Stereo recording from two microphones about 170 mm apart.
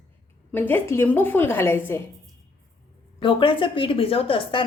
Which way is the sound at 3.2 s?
30° left (ahead or behind).